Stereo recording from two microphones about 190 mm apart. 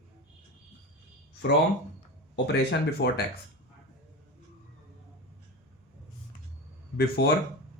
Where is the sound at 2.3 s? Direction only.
60° left (ahead or behind).